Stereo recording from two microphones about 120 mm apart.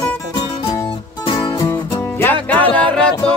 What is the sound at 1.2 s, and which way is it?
Music, 40° left (ahead or behind).